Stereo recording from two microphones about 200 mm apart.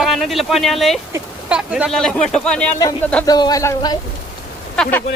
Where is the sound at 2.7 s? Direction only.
15° left (ahead or behind).